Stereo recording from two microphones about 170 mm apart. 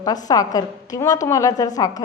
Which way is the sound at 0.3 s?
20° left (ahead or behind).